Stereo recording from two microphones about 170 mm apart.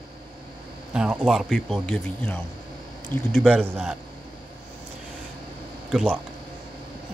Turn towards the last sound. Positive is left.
turn(degrees=-10)  # may be behind; listen again after turning